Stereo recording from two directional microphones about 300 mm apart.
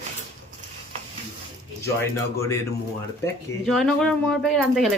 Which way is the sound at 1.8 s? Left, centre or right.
Centre.